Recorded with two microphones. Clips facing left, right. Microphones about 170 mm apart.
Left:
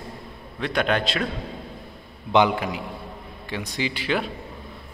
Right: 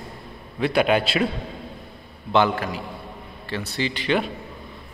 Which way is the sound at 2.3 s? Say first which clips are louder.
Left 1 dB; 15° left (ahead or behind).